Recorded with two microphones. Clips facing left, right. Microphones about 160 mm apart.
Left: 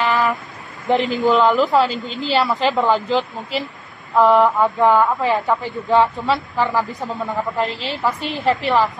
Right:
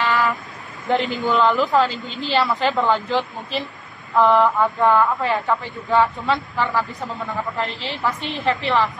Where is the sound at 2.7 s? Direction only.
20° left (ahead or behind).